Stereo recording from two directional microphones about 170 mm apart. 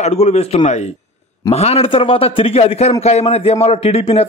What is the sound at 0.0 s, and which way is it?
Speech, 40° left (ahead or behind).